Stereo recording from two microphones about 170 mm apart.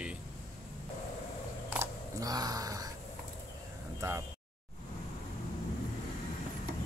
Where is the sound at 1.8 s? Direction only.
20° right (ahead or behind).